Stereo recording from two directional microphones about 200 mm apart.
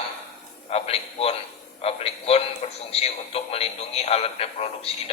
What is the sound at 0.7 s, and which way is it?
A man's voice, 30° left (ahead or behind).